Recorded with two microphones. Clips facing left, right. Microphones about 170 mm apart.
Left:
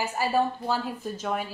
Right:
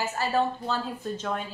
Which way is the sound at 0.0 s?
10° left (ahead or behind).